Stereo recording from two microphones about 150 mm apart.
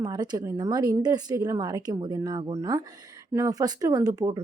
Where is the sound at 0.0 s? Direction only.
30° right (ahead or behind).